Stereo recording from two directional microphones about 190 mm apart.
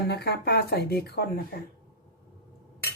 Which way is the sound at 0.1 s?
60° left (ahead or behind).